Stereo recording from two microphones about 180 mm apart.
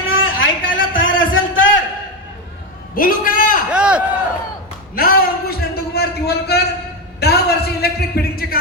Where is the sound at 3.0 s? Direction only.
50° left (ahead or behind).